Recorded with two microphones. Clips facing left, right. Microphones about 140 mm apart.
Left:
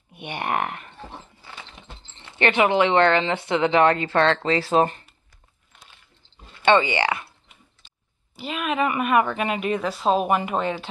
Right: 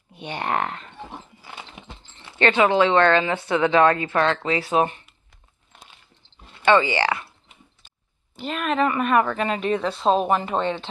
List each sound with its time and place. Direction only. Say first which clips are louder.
0.1 s speech: right 1 dB; 15° left (ahead or behind)
1.5 s a sound: right 3 dB; 15° right (ahead or behind)
2.3 s speech: right 1 dB; 20° left (ahead or behind)
4.1 s speech: left 2 dB; 35° left (ahead or behind)
6.6 s speech: even; 25° left (ahead or behind)
8.4 s speech: right 2 dB; 5° left (ahead or behind)